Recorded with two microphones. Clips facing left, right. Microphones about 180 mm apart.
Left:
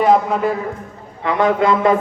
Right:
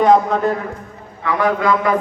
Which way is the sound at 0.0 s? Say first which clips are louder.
Right 1 dB; 5° left (ahead or behind).